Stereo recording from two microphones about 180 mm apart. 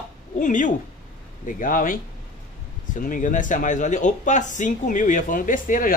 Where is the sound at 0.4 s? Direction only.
45° left (ahead or behind).